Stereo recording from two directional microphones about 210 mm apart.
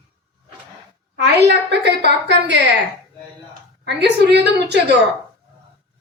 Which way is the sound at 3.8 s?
55° right (ahead or behind).